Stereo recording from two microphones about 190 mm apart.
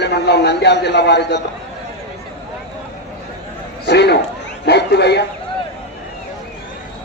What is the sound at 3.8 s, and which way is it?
Speech, 60° left (ahead or behind).